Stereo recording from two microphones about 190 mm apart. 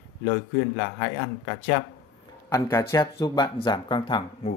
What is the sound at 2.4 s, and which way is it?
Speech, 15° left (ahead or behind).